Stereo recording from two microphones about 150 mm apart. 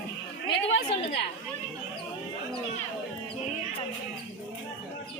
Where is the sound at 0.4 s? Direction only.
40° left (ahead or behind).